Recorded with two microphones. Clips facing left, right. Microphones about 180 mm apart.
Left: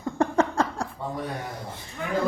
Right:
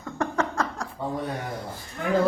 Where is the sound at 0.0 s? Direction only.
30° left (ahead or behind).